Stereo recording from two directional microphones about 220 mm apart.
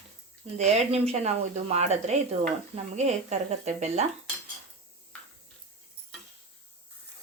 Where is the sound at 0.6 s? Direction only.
30° right (ahead or behind).